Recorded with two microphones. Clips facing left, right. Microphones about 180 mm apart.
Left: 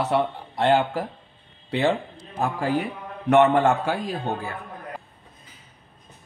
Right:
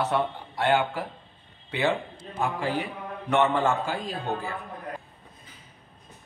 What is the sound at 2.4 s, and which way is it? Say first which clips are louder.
Speech: left 2 dB; 35° left (ahead or behind).